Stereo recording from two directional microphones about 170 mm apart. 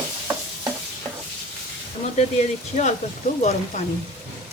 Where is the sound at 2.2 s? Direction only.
45° left (ahead or behind).